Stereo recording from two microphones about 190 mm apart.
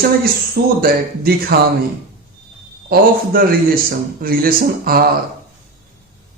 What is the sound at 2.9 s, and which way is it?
A man's voice, 50° right (ahead or behind).